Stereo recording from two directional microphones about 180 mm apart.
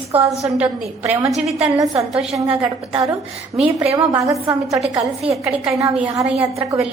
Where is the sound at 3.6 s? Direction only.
10° right (ahead or behind).